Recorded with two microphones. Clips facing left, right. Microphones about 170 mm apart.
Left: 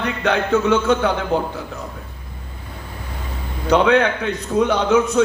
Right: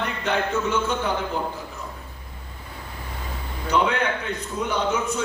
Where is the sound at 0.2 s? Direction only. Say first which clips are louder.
Left 7 dB; 75° left (ahead or behind).